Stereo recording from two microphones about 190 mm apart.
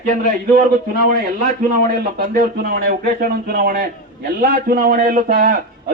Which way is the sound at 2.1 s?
50° right (ahead or behind).